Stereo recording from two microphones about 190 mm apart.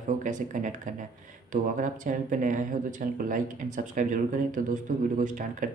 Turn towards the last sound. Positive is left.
turn(degrees=-45)  # may be behind; listen again after turning